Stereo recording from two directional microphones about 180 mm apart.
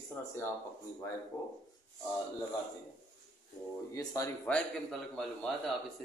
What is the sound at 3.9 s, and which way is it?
Speech, 20° left (ahead or behind).